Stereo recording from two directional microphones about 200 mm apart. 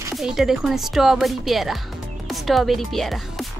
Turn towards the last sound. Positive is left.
turn(degrees=0)  # may be behind; listen again after turning